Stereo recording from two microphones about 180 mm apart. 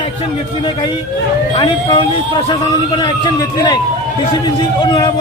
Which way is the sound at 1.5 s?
25° left (ahead or behind).